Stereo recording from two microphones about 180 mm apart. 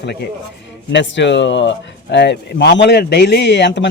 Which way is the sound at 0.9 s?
85° left.